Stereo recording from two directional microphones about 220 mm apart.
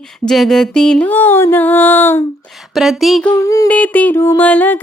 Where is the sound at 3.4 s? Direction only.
15° left (ahead or behind).